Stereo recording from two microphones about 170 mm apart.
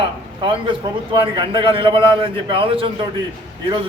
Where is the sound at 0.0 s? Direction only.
30° right (ahead or behind).